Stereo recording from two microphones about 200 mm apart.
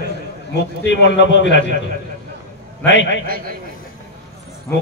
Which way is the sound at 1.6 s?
40° right (ahead or behind).